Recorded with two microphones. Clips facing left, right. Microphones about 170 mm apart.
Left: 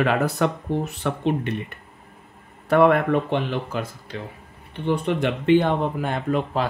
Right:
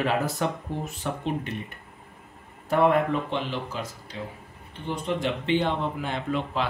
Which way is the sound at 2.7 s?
65° left (ahead or behind).